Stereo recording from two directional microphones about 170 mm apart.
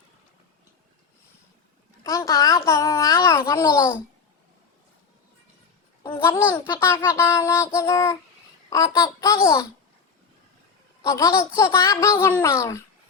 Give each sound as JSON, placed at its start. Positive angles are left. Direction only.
{"t": 2.0, "sound": "a child's voice", "side_deg": 20}
{"t": 6.0, "sound": "a child's voice", "side_deg": 20}
{"t": 11.0, "sound": "speech", "side_deg": 20}